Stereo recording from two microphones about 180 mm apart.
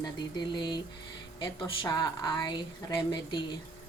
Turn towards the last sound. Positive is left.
turn(degrees=25)  # may be behind; listen again after turning